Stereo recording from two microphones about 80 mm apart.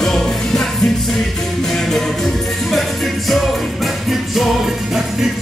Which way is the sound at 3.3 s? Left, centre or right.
Centre.